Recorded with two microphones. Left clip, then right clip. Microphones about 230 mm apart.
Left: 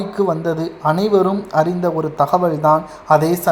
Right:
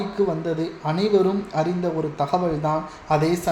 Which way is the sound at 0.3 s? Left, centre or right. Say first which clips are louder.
Left 6 dB; left.